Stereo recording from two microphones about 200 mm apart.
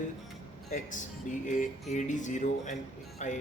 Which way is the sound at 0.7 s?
40° left (ahead or behind).